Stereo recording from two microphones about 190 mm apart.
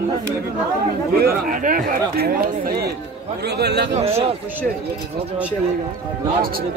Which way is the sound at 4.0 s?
30° right (ahead or behind).